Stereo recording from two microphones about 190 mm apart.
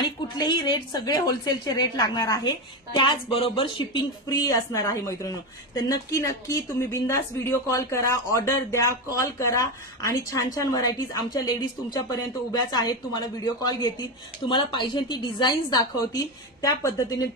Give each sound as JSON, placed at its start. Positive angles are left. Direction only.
{"t": 0.5, "sound": "a woman's voice", "side_deg": 25}